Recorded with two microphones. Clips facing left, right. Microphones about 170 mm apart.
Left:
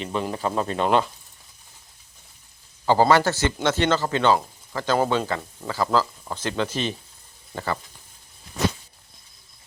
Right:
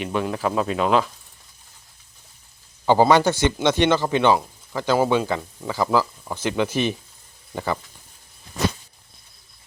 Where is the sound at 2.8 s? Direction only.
15° right (ahead or behind).